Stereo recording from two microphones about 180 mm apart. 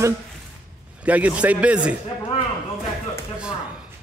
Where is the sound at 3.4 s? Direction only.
5° right (ahead or behind).